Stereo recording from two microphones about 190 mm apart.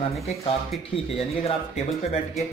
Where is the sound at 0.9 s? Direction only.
30° left (ahead or behind).